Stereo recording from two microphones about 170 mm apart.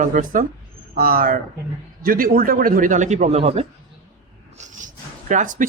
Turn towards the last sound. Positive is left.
turn(degrees=-50)  # may be behind; listen again after turning